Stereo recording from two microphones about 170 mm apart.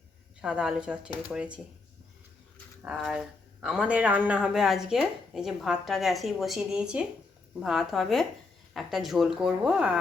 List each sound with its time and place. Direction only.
0.4 s speech: 5° right (ahead or behind)
2.8 s speech: 5° right (ahead or behind)